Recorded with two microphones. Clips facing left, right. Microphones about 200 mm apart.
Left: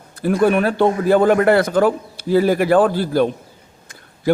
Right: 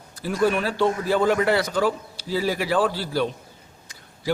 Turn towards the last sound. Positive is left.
turn(degrees=55)  # may be behind; listen again after turning